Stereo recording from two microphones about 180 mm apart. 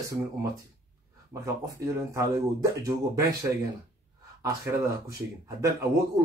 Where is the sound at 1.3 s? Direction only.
15° right (ahead or behind).